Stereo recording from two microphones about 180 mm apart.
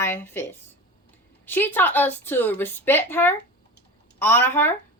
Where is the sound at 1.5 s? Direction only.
10° left (ahead or behind).